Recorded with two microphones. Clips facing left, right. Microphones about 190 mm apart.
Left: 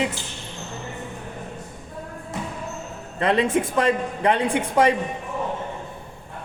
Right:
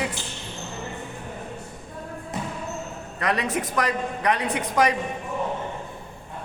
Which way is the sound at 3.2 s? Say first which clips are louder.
Left 6 dB; 25° left (ahead or behind).